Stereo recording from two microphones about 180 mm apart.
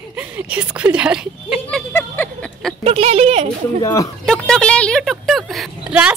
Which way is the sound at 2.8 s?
35° right (ahead or behind).